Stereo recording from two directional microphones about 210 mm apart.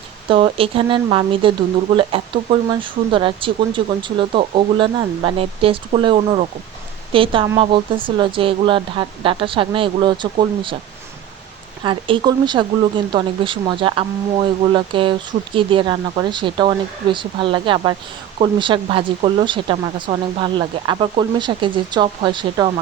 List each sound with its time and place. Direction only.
0.3 s speech: 25° right (ahead or behind)
11.8 s speech: 25° right (ahead or behind)